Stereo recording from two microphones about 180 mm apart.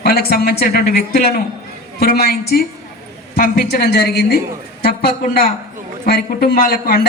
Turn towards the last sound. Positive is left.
turn(degrees=55)  # may be behind; listen again after turning